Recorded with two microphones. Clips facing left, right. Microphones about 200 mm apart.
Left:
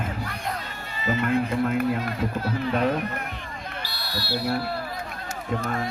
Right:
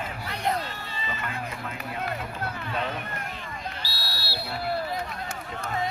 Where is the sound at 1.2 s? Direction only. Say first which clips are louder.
Left 12 dB; 55° left (ahead or behind).